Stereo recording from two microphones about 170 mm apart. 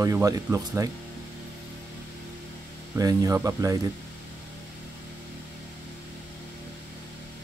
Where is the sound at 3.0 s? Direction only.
20° right (ahead or behind).